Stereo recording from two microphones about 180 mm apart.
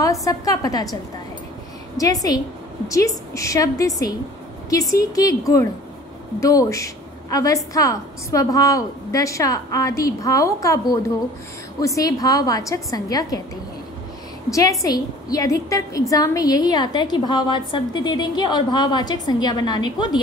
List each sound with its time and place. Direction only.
0.0 s a woman's voice: 20° left (ahead or behind)
2.0 s a woman's voice: 20° left (ahead or behind)
14.5 s a woman's voice: 20° left (ahead or behind)